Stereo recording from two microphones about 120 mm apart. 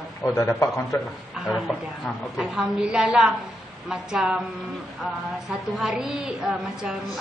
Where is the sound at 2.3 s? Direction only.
5° right (ahead or behind).